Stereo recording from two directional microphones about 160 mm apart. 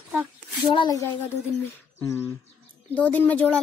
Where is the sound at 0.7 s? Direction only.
30° left (ahead or behind).